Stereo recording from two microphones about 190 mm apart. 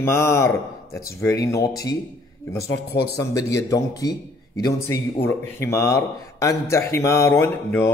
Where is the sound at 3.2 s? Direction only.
15° left (ahead or behind).